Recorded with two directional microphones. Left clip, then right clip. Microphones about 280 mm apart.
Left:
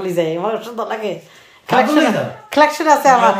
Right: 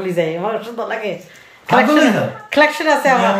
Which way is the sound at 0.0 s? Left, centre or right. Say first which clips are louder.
Even; centre.